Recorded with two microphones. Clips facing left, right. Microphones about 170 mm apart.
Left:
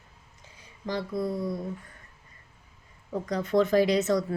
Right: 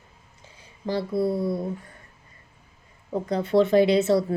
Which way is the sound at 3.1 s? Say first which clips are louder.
Right 4 dB; 30° right (ahead or behind).